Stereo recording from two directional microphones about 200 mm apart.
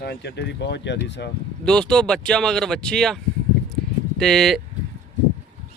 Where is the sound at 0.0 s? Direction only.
55° left (ahead or behind).